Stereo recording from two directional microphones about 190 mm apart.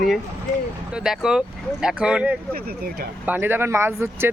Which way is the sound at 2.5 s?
55° right (ahead or behind).